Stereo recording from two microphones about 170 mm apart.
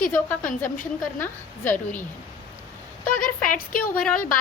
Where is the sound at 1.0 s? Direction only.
10° left (ahead or behind).